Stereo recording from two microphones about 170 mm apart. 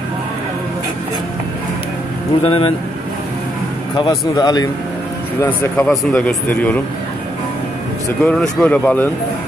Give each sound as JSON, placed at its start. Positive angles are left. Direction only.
{"t": 2.4, "sound": "speech", "side_deg": 35}
{"t": 3.9, "sound": "speech", "side_deg": 25}
{"t": 8.2, "sound": "speech", "side_deg": 5}